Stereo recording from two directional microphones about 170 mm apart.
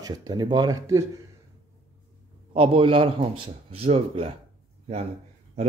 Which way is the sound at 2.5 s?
30° right (ahead or behind).